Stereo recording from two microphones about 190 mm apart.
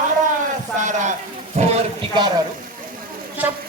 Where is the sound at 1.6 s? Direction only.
35° right (ahead or behind).